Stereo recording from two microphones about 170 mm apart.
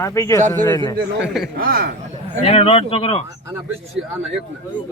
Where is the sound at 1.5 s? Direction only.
60° right (ahead or behind).